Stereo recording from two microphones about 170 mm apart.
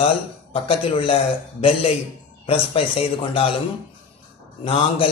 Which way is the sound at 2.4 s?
35° left (ahead or behind).